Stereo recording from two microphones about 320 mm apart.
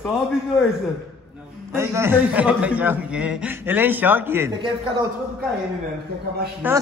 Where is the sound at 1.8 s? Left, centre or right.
Centre.